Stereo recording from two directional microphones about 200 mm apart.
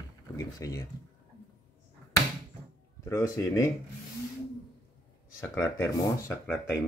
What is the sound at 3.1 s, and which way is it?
Speech, 15° left (ahead or behind).